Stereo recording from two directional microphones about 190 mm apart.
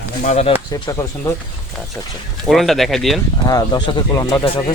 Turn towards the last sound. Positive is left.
turn(degrees=20)  # may be behind; listen again after turning